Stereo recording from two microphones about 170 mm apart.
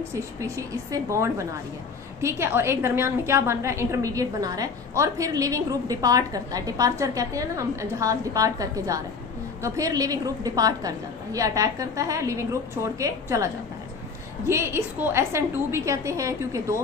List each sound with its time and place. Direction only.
0.1 s a woman's voice: 20° right (ahead or behind)